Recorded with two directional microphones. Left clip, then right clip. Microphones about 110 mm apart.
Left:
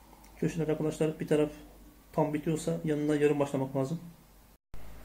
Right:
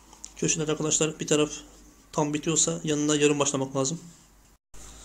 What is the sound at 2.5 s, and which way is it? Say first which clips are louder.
Speech: right 5 dB; 20° right (ahead or behind).